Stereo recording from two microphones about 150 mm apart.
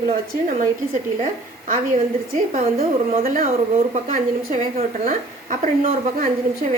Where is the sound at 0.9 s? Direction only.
65° right (ahead or behind).